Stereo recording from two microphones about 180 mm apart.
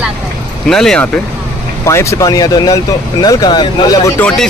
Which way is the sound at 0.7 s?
5° left (ahead or behind).